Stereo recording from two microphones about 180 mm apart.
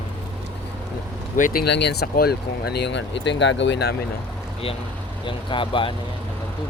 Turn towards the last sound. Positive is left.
turn(degrees=30)  # may be behind; listen again after turning